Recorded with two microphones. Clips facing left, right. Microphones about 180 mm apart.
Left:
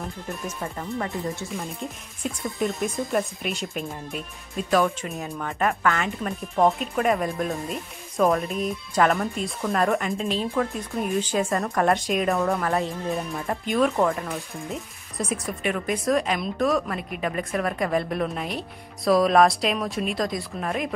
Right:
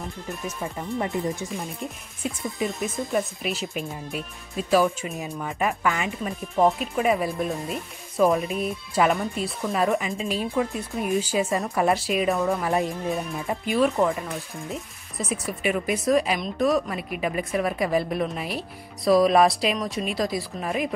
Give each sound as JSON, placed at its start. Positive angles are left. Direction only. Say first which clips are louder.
{"t": 0.6, "sound": "speech", "louder": "right 3 dB", "side_deg": -15}
{"t": 1.5, "sound": "speech", "louder": "even", "side_deg": 0}
{"t": 12.6, "sound": "speech", "louder": "right 1 dB", "side_deg": -15}
{"t": 13.1, "sound": "speech", "louder": "even", "side_deg": -5}